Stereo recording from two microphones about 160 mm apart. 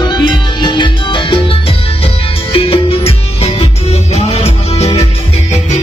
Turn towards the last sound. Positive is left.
turn(degrees=40)  # may be behind; listen again after turning